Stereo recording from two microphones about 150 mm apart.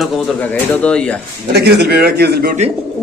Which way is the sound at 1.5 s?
90° right.